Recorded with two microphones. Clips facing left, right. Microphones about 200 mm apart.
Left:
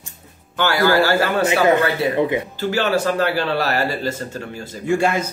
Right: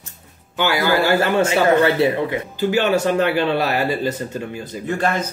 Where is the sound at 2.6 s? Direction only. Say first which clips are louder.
Right 4 dB; 20° right (ahead or behind).